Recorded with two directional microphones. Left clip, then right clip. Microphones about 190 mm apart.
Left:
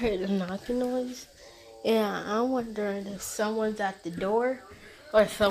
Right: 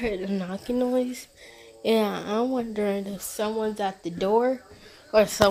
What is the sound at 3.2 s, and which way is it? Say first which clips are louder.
Speech: right 1 dB; 20° right (ahead or behind).